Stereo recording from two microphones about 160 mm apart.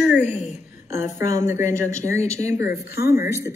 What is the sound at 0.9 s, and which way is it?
A woman's voice, 15° right (ahead or behind).